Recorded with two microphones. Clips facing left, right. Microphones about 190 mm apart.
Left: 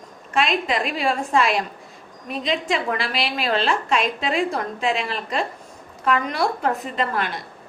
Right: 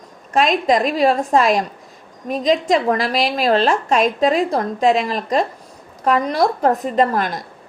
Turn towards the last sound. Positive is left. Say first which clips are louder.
# right 7 dB
turn(degrees=-40)  # may be behind; listen again after turning